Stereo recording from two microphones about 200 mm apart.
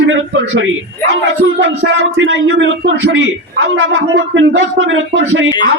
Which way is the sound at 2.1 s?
70° right (ahead or behind).